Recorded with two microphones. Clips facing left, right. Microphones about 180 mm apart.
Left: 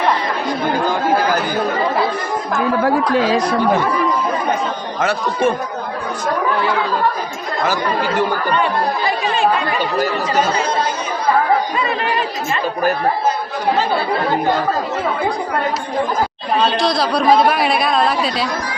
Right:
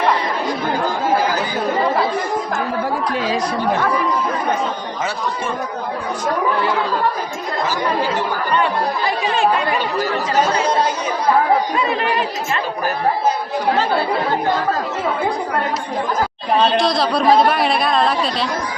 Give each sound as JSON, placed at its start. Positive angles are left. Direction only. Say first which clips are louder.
{"t": 2.8, "sound": "speech", "louder": "left 5 dB", "side_deg": 90}
{"t": 16.8, "sound": "speech", "louder": "even", "side_deg": 0}